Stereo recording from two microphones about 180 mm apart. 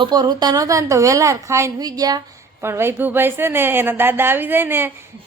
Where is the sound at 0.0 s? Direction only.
20° right (ahead or behind).